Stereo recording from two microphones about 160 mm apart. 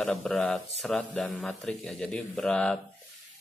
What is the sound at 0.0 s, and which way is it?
Speech, centre (ahead or behind).